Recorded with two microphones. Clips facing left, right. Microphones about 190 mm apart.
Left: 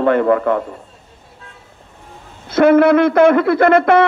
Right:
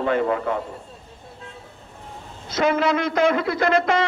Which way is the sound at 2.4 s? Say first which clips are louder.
Left 10 dB; 55° left (ahead or behind).